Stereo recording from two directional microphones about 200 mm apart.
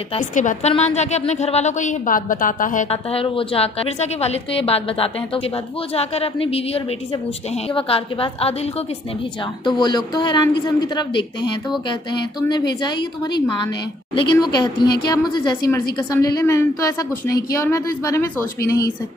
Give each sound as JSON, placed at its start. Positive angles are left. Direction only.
{"t": 0.1, "sound": "a woman's voice", "side_deg": 40}